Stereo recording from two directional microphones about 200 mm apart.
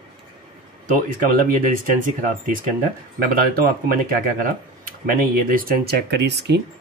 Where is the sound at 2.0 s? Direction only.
40° right (ahead or behind); by 6.6 s 55° right (ahead or behind).